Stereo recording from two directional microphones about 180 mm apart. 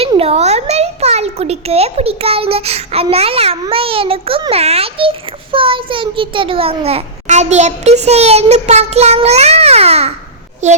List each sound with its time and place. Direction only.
0.0 s a child's voice: 35° right (ahead or behind)